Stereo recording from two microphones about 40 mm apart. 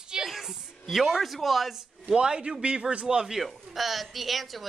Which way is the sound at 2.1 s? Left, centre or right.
Right.